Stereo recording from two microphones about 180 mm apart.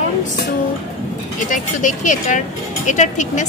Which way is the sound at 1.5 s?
45° left (ahead or behind).